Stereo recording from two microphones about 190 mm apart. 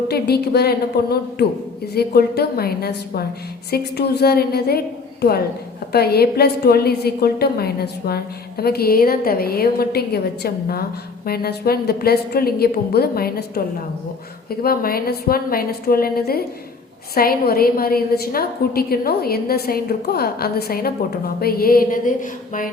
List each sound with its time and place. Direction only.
0.1 s a woman's voice: 60° left (ahead or behind)
5.9 s a woman's voice: 55° left (ahead or behind)
14.6 s a woman's voice: 50° left (ahead or behind)